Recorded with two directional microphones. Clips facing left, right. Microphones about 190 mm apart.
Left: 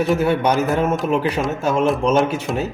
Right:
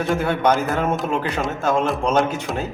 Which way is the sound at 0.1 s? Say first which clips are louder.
Right 2 dB; 10° left (ahead or behind).